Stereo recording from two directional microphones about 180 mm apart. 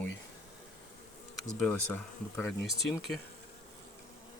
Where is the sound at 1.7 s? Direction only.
10° left (ahead or behind).